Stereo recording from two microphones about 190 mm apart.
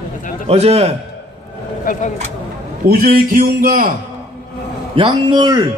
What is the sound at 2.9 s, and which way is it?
A man's voice, 50° right (ahead or behind).